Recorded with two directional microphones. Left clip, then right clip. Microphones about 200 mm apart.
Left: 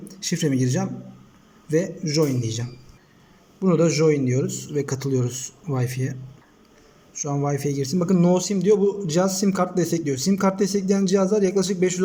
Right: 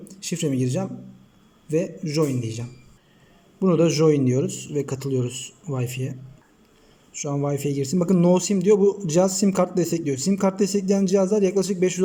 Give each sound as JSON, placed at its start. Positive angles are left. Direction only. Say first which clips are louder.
{"t": 0.1, "sound": "a man's voice", "louder": "left 2 dB", "side_deg": -5}